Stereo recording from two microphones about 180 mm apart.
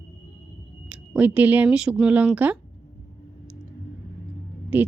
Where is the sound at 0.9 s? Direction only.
5° right (ahead or behind).